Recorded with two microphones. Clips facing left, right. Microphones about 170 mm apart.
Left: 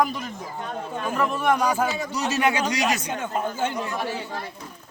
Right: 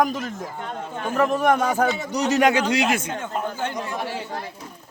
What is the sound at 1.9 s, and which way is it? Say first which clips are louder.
Speech: right 3 dB; 15° right (ahead or behind).